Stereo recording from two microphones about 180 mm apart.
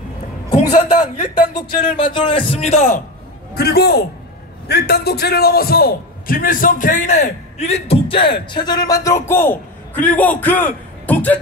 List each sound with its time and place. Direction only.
0.7 s a man's voice: 50° left (ahead or behind)
2.0 s a man's voice: 25° left (ahead or behind)
3.5 s a man's voice: 60° left (ahead or behind); by 11.3 s 10° left (ahead or behind)